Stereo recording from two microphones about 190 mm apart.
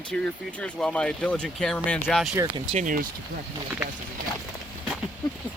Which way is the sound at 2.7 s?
45° right (ahead or behind).